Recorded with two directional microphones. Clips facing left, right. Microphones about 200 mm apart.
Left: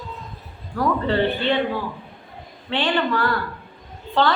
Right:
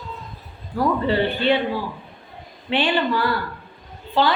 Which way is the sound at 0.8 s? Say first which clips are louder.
Even; 10° right (ahead or behind).